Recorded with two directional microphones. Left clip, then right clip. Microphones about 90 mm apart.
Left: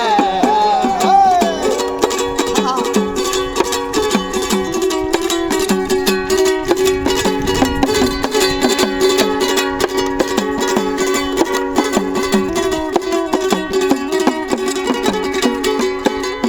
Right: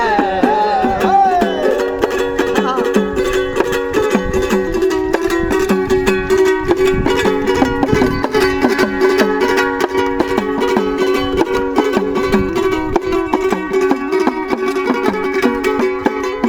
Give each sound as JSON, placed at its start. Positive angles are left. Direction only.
{"t": 0.2, "sound": "music", "side_deg": 0}
{"t": 1.0, "sound": "music", "side_deg": 30}
{"t": 3.9, "sound": "music", "side_deg": 40}
{"t": 9.0, "sound": "music", "side_deg": 45}